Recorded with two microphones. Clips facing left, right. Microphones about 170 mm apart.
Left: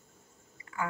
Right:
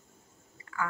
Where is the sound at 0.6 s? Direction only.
20° left (ahead or behind).